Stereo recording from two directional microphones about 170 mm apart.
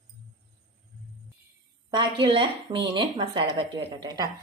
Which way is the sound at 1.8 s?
30° right (ahead or behind).